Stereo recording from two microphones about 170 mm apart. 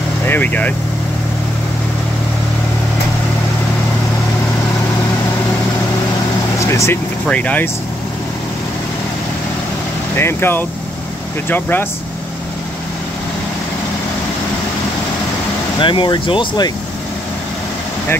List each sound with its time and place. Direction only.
0.3 s speech: 10° left (ahead or behind)
6.6 s speech: 15° left (ahead or behind)
10.1 s speech: 15° left (ahead or behind)
15.8 s speech: 30° left (ahead or behind)